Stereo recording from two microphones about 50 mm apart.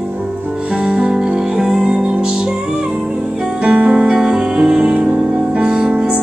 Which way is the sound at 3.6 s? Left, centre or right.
Right.